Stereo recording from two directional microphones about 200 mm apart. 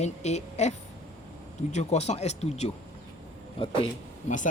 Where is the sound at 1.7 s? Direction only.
35° left (ahead or behind).